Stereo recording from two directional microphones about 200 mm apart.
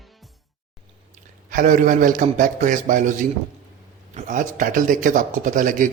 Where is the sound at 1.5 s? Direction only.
40° right (ahead or behind).